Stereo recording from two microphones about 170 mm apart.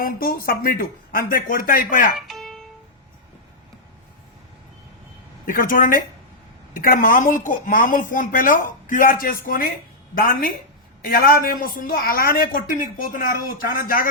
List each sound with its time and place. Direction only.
0.0 s speech: 55° left (ahead or behind)
2.1 s music: centre (ahead or behind)
5.5 s speech: 55° left (ahead or behind)